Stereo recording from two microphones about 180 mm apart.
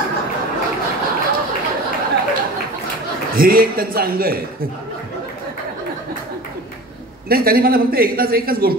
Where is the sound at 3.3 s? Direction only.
55° right (ahead or behind).